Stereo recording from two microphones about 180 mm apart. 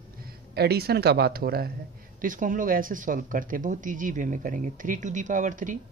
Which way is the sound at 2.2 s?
50° right (ahead or behind).